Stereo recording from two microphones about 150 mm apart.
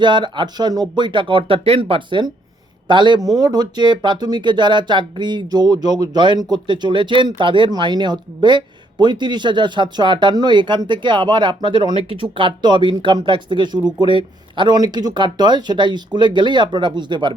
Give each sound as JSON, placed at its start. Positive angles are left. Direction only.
{"t": 0.0, "sound": "speech", "side_deg": -30}